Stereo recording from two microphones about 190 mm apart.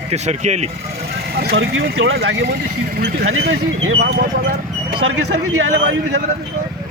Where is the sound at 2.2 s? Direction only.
60° right (ahead or behind).